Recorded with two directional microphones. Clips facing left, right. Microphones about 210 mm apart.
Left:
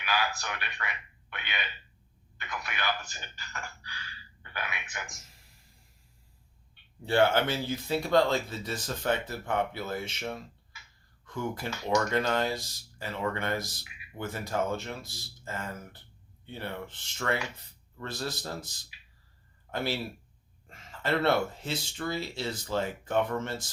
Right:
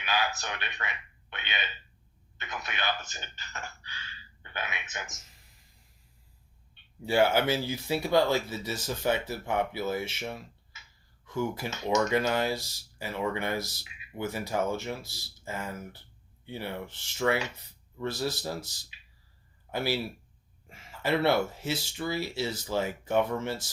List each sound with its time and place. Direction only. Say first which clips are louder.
0.0 s speech: right 1 dB; 20° right (ahead or behind)
7.1 s speech: even; 10° right (ahead or behind)
11.7 s speech: even; 20° right (ahead or behind)
12.1 s speech: right 1 dB; 10° right (ahead or behind)
19.7 s speech: right 2 dB; 10° right (ahead or behind)